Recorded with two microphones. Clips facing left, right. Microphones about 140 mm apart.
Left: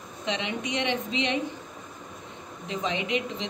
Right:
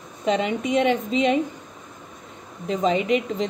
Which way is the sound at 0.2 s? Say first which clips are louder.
Right 8 dB; 45° right (ahead or behind).